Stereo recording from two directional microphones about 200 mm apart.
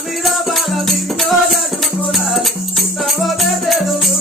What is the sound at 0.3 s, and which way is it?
Music, centre (ahead or behind).